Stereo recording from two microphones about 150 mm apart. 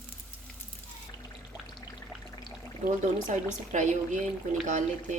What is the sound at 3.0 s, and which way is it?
Speech, 55° right (ahead or behind).